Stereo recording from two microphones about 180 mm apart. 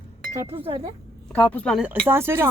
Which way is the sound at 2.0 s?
15° right (ahead or behind).